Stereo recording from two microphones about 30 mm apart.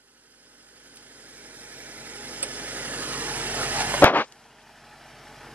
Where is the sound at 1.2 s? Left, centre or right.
Right.